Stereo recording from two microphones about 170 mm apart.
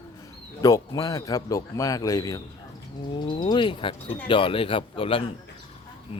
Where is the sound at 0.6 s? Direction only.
20° left (ahead or behind).